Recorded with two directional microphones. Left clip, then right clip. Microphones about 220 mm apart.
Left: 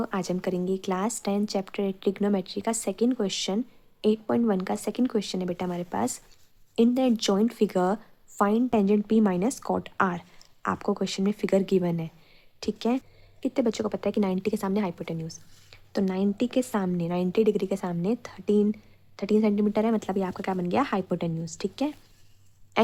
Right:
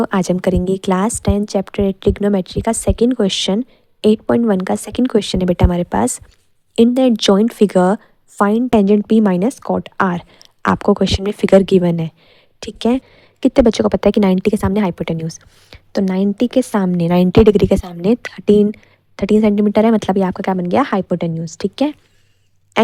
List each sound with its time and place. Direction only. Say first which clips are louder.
0.0 s speech: right 13 dB; 40° right (ahead or behind)